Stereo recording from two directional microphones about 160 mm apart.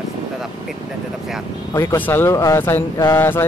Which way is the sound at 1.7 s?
20° left (ahead or behind).